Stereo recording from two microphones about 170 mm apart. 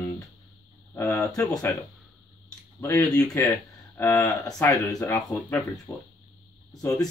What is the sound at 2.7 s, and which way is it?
Speech, 20° left (ahead or behind).